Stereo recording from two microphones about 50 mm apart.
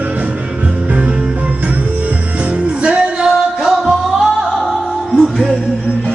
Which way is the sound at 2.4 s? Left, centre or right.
Right.